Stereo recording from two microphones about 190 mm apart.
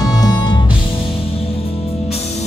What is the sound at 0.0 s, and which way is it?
Music, 20° left (ahead or behind).